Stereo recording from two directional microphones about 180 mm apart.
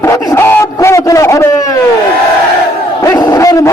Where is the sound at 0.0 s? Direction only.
15° left (ahead or behind).